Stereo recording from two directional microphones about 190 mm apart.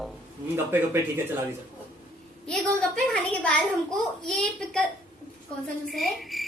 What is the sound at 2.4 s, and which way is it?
A child's voice, 5° left (ahead or behind).